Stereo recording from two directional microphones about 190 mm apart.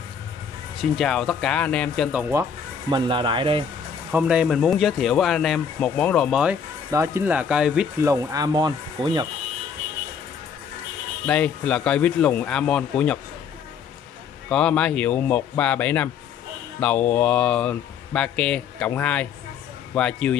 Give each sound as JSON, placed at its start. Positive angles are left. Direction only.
{"t": 0.7, "sound": "speech", "side_deg": 0}
{"t": 2.9, "sound": "speech", "side_deg": -25}
{"t": 4.1, "sound": "speech", "side_deg": -5}
{"t": 6.9, "sound": "speech", "side_deg": -15}
{"t": 8.0, "sound": "speech", "side_deg": -15}
{"t": 11.2, "sound": "speech", "side_deg": 5}
{"t": 14.5, "sound": "speech", "side_deg": 5}
{"t": 17.1, "sound": "speech", "side_deg": 5}